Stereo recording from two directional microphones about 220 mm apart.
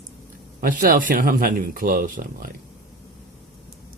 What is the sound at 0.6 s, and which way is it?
Speech, 40° right (ahead or behind).